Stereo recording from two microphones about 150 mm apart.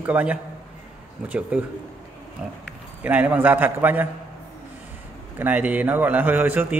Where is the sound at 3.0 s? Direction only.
10° right (ahead or behind).